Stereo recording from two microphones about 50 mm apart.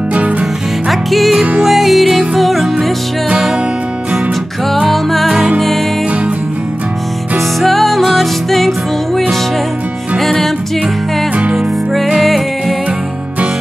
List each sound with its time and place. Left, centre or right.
0.1 s music: right
0.8 s music: centre
4.6 s music: centre
7.3 s music: centre
11.5 s music: centre